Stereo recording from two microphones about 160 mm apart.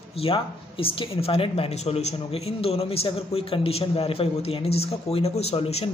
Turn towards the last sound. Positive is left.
turn(degrees=40)  # may be behind; listen again after turning